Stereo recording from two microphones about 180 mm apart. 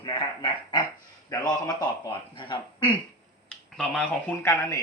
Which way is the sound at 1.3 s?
20° left (ahead or behind).